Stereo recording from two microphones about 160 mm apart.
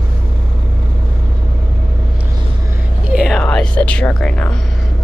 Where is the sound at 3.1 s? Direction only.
Centre (ahead or behind).